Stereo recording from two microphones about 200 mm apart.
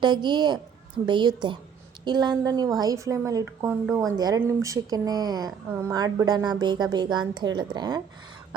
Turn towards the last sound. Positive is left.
turn(degrees=-20)  # may be behind; listen again after turning